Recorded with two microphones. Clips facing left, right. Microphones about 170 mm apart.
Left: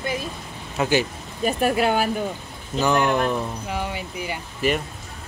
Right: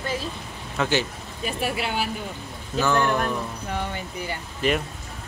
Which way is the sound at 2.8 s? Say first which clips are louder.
Left 2 dB; 15° left (ahead or behind).